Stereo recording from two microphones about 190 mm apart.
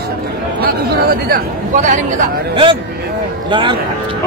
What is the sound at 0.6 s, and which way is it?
Speech, 55° right (ahead or behind).